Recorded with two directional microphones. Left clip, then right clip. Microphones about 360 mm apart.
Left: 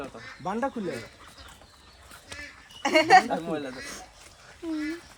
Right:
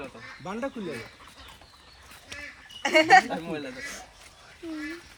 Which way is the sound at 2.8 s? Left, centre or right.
Left.